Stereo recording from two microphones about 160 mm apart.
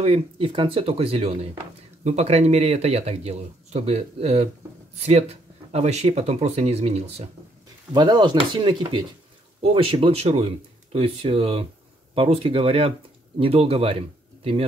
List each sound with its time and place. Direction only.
0.0 s speech: 40° right (ahead or behind)
7.9 s speech: 25° right (ahead or behind)